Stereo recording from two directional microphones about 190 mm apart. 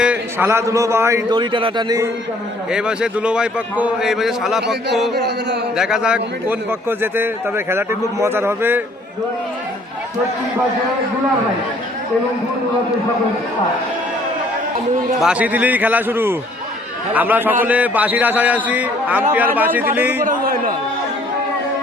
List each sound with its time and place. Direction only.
0.0 s a man's voice: 10° right (ahead or behind)
1.3 s a man's voice: 25° right (ahead or behind)
2.7 s a man's voice: 5° right (ahead or behind)
5.1 s a sound: 60° right (ahead or behind)
5.7 s a man's voice: centre (ahead or behind)
15.2 s a man's voice: 5° right (ahead or behind)
20.2 s a man's voice: 50° right (ahead or behind)